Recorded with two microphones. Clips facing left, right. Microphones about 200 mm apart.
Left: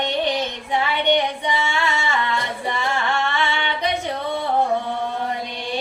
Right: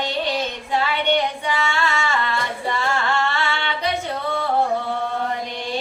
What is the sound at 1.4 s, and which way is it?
Singing, 15° left (ahead or behind).